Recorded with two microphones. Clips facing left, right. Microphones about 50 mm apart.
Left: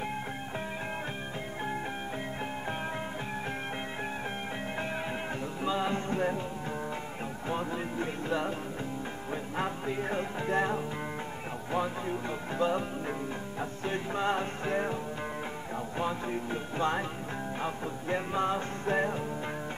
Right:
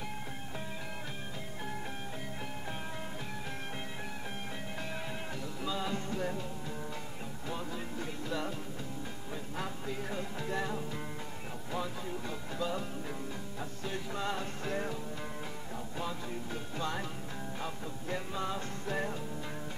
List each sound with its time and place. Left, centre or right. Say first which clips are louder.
5.6 s music: left 6 dB; left
7.4 s music: left 6 dB; left
16.0 s music: left 7 dB; left